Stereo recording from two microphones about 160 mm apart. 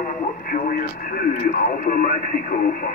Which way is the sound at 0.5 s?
60° left (ahead or behind).